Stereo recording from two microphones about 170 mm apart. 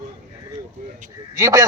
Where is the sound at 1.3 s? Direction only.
20° right (ahead or behind).